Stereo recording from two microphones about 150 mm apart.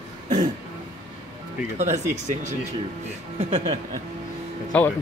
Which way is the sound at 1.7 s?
50° right (ahead or behind).